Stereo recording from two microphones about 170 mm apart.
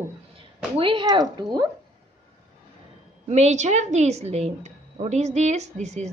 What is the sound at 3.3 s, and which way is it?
A woman's voice, 40° right (ahead or behind).